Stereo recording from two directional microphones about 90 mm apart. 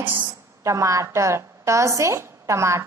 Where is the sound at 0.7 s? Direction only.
35° right (ahead or behind).